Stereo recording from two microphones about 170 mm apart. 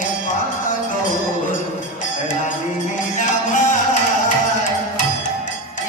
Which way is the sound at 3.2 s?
45° left (ahead or behind).